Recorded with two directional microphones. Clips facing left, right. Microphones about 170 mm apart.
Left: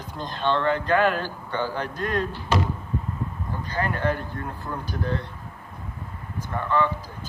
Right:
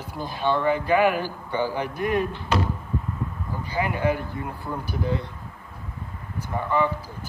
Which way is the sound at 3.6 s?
10° right (ahead or behind).